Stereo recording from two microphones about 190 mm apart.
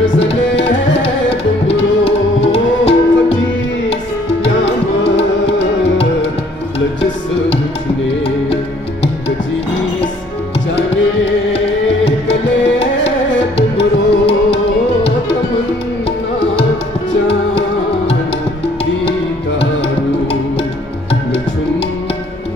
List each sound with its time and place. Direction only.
0.2 s music: 30° left (ahead or behind)
11.5 s music: 30° left (ahead or behind)
17.3 s music: 30° left (ahead or behind)
21.1 s music: 30° left (ahead or behind)